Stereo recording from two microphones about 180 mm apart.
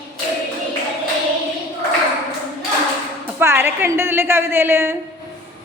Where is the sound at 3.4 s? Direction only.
15° right (ahead or behind).